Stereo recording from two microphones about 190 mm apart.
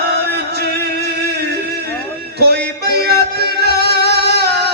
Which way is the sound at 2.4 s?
55° right (ahead or behind).